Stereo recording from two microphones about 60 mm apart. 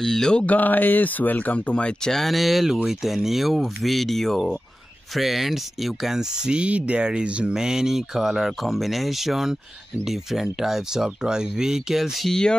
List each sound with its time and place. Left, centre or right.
0.0 s mantra: centre
0.5 s speech: left
2.0 s speech: centre